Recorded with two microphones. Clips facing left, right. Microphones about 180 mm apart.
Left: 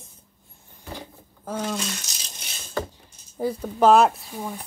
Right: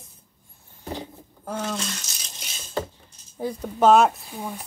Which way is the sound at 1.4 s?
10° left (ahead or behind).